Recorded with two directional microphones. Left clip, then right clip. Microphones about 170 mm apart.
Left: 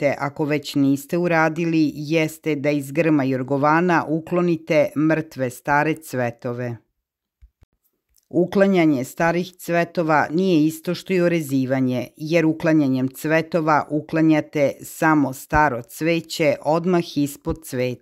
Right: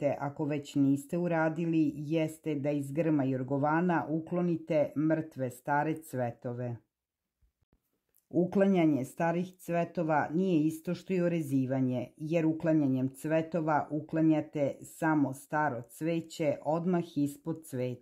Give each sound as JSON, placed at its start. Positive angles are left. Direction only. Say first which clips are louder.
{"t": 0.0, "sound": "speech", "louder": "left 11 dB", "side_deg": 20}
{"t": 8.3, "sound": "speech", "louder": "left 10 dB", "side_deg": 25}